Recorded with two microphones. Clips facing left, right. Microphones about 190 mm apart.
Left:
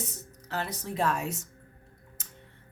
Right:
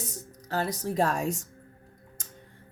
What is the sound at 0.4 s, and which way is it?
Speech, 40° right (ahead or behind).